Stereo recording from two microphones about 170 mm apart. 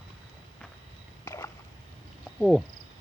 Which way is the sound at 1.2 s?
20° left (ahead or behind).